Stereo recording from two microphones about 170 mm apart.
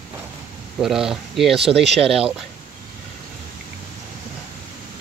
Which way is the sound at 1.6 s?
35° right (ahead or behind).